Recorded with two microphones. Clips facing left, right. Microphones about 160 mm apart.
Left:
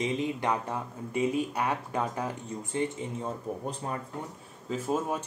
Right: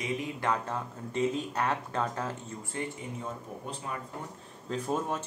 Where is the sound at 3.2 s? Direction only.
40° left (ahead or behind).